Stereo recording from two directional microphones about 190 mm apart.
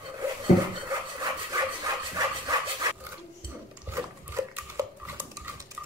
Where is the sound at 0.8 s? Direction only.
15° right (ahead or behind).